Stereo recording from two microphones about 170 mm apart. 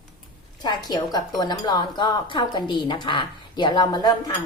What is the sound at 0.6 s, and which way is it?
A woman's voice, 25° left (ahead or behind).